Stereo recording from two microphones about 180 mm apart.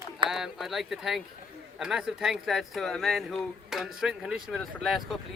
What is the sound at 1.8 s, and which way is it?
Speech, 5° right (ahead or behind).